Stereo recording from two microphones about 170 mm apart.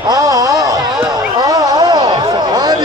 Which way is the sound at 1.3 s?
25° right (ahead or behind).